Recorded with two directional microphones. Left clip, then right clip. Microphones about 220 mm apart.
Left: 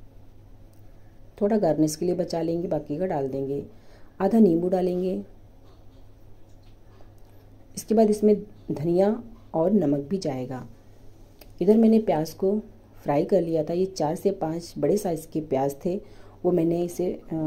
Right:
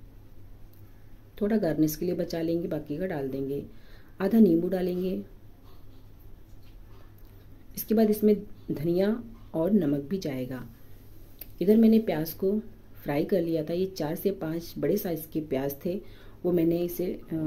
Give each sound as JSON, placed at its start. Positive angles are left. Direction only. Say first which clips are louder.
{"t": 1.3, "sound": "a woman's voice", "louder": "left 5 dB", "side_deg": 5}
{"t": 7.7, "sound": "a woman's voice", "louder": "left 4 dB", "side_deg": 5}